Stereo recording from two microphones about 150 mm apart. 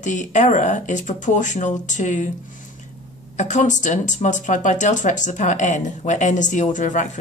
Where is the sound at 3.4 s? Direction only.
55° left (ahead or behind).